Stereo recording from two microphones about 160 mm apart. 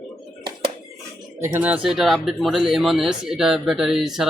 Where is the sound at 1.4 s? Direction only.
15° right (ahead or behind).